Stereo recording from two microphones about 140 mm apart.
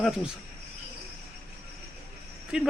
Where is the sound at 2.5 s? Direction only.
5° right (ahead or behind).